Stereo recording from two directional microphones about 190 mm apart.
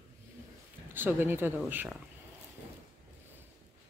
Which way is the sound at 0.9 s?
10° right (ahead or behind).